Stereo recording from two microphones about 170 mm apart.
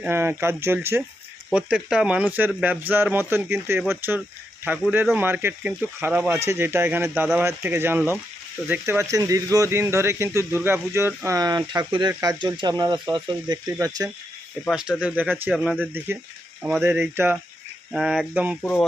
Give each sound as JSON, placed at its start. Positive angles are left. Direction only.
{"t": 0.0, "sound": "speech", "side_deg": -15}
{"t": 14.6, "sound": "speech", "side_deg": -5}
{"t": 15.4, "sound": "speech", "side_deg": 5}
{"t": 15.8, "sound": "speech", "side_deg": -10}
{"t": 18.6, "sound": "speech", "side_deg": 5}